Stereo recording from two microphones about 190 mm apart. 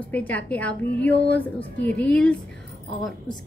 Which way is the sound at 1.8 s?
65° left (ahead or behind).